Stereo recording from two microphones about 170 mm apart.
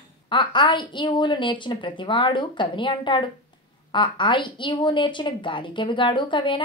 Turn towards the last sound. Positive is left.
turn(degrees=30)  # may be behind; listen again after turning